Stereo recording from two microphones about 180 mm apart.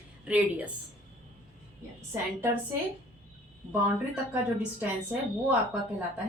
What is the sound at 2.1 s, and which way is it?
Speech, 15° right (ahead or behind).